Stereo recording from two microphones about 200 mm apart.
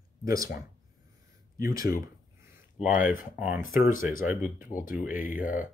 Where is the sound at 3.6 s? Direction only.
45° left (ahead or behind).